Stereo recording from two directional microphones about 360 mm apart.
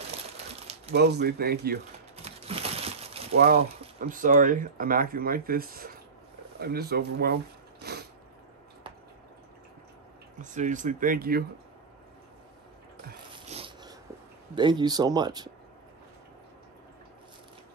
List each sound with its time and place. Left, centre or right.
0.9 s crumpling: right
3.3 s speech: right
7.8 s mechanisms: right
10.4 s speech: right
13.3 s dog: centre
14.5 s speech: centre